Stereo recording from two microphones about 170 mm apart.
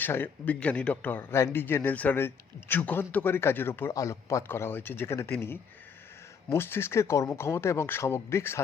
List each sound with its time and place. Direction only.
0.0 s a man's voice: 10° left (ahead or behind)